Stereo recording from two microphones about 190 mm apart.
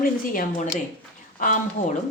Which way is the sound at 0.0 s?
45° left (ahead or behind).